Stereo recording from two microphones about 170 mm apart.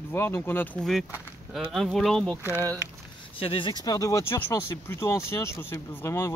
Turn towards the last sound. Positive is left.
turn(degrees=15)  # may be behind; listen again after turning